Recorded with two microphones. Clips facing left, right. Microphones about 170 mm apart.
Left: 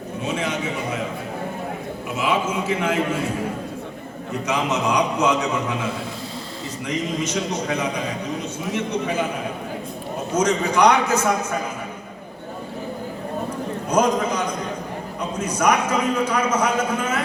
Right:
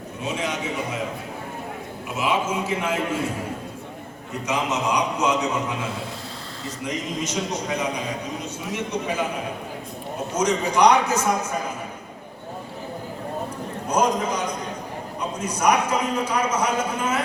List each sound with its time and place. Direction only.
0.3 s a sound: 55° left (ahead or behind)
2.1 s a man's voice: 60° left (ahead or behind)
4.4 s a man's voice: 60° left (ahead or behind)
10.4 s a man's voice: 55° left (ahead or behind)
14.2 s a sound: 50° left (ahead or behind)
15.4 s a man's voice: 50° left (ahead or behind)